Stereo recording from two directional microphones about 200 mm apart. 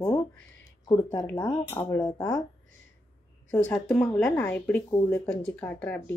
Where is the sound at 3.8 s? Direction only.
5° left (ahead or behind).